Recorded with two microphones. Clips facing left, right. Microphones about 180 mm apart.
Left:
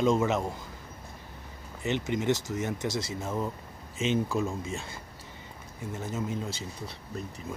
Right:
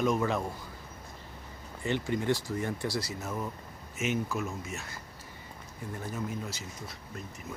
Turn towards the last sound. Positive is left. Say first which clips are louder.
# left 3 dB
turn(degrees=30)  # may be behind; listen again after turning